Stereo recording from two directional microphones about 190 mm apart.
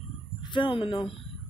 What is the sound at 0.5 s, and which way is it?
Speech, 25° left (ahead or behind).